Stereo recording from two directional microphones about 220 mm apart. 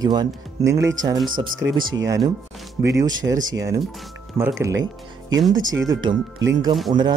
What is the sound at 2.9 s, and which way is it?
Speech, 15° right (ahead or behind).